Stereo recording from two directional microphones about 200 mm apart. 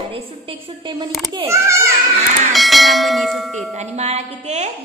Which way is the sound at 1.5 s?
15° right (ahead or behind).